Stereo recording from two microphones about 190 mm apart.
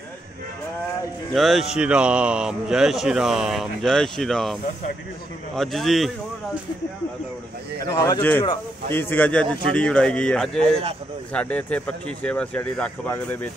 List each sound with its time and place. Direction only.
1.3 s speech: centre (ahead or behind)
5.6 s speech: centre (ahead or behind)
7.8 s speech: 15° left (ahead or behind)
10.6 s speech: 30° right (ahead or behind)
11.3 s speech: 5° left (ahead or behind)